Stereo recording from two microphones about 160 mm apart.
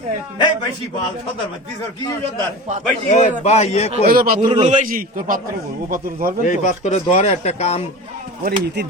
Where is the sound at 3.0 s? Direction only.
45° left (ahead or behind).